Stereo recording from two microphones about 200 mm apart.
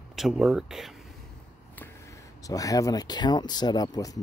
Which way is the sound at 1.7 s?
10° left (ahead or behind).